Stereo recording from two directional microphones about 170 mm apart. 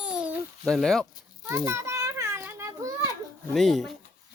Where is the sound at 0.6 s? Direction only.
5° left (ahead or behind).